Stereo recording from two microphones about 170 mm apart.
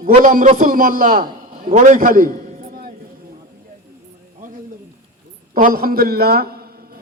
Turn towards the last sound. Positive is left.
turn(degrees=-65)  # may be behind; listen again after turning